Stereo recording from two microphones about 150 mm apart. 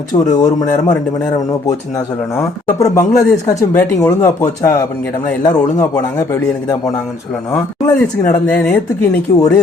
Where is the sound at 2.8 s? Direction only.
25° left (ahead or behind).